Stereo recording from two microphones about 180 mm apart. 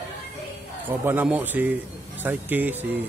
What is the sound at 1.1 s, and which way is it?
Speech, 10° right (ahead or behind).